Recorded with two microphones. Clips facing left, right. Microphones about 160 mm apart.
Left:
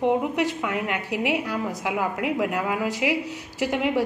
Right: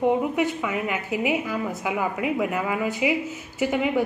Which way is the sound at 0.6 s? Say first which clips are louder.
Even; centre (ahead or behind).